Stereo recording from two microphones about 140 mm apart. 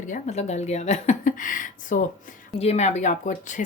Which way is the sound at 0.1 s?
50° left (ahead or behind).